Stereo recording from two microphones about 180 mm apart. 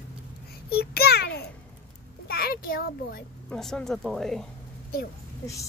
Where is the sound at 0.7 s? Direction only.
60° left (ahead or behind).